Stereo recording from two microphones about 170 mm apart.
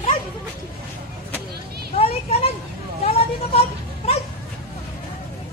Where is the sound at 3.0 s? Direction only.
35° left (ahead or behind).